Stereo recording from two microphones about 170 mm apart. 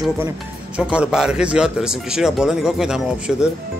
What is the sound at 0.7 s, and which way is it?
Speech, 5° right (ahead or behind).